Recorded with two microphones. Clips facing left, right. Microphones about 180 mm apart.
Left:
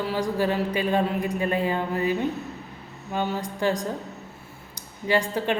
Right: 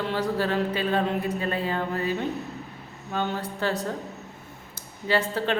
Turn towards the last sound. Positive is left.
turn(degrees=15)  # may be behind; listen again after turning